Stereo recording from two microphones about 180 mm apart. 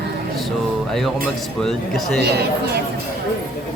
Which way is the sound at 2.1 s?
65° right (ahead or behind).